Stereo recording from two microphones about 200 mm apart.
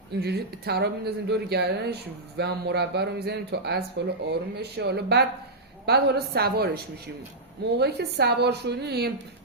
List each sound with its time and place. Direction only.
0.2 s a woman's voice: 55° right (ahead or behind)